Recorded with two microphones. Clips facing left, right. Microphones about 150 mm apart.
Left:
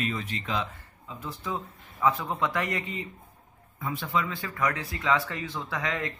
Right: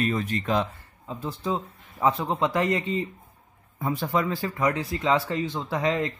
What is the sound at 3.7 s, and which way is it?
Speech, 40° right (ahead or behind).